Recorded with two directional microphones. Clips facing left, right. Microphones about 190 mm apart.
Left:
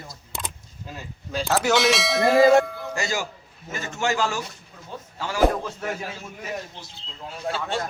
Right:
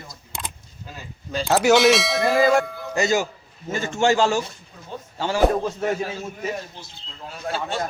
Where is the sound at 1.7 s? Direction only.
Centre (ahead or behind).